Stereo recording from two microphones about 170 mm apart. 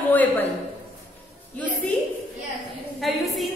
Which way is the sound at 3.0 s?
Centre (ahead or behind).